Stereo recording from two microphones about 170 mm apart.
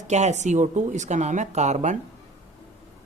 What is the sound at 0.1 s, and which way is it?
Speech, 40° right (ahead or behind).